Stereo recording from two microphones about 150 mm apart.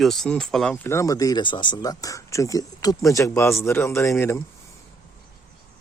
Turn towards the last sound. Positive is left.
turn(degrees=20)  # may be behind; listen again after turning